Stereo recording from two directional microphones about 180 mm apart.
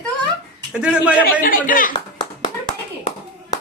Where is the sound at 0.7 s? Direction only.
5° right (ahead or behind).